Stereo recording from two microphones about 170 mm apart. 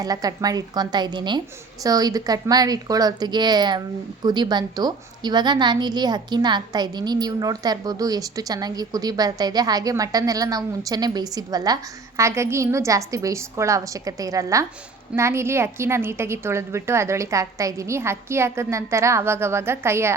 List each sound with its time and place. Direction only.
0.0 s a woman's voice: 20° right (ahead or behind)